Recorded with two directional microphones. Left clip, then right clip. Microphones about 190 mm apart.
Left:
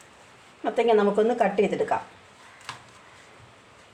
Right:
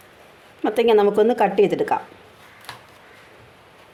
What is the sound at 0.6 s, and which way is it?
Speech, 60° right (ahead or behind).